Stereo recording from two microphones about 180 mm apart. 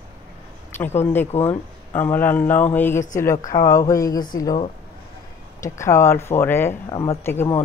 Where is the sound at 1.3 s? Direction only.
35° left (ahead or behind).